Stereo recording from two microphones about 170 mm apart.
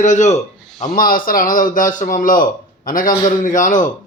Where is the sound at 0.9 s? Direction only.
55° left (ahead or behind).